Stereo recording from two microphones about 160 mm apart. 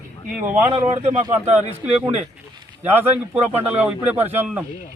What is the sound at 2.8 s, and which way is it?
Speech, 15° right (ahead or behind).